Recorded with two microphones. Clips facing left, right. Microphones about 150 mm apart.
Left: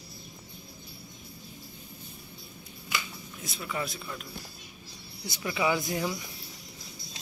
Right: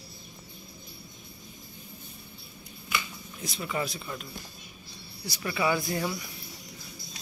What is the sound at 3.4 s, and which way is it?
Speech, centre (ahead or behind).